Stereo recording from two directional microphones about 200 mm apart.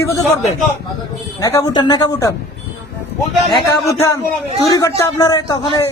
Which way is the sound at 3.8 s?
15° left (ahead or behind).